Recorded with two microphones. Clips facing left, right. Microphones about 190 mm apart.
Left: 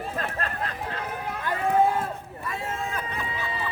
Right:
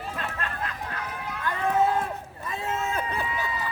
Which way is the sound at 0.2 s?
40° left (ahead or behind).